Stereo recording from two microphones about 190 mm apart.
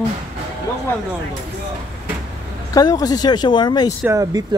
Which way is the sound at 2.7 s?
20° left (ahead or behind).